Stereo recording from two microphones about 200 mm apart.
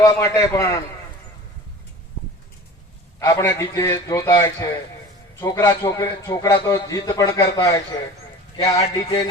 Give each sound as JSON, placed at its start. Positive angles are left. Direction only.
{"t": 0.0, "sound": "a man's voice", "side_deg": 15}
{"t": 3.2, "sound": "a man's voice", "side_deg": 15}